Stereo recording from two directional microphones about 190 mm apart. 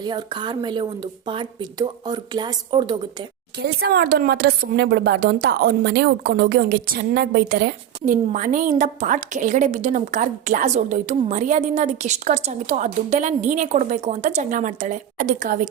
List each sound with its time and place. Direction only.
0.0 s speech: 25° right (ahead or behind)
3.6 s a woman's voice: 55° right (ahead or behind)
8.0 s a woman's voice: 40° right (ahead or behind)